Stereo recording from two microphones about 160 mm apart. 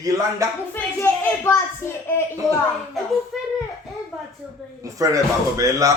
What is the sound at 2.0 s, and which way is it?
Speech, 15° left (ahead or behind).